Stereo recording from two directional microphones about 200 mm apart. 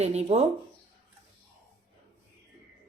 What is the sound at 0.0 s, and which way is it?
Speech, 30° right (ahead or behind).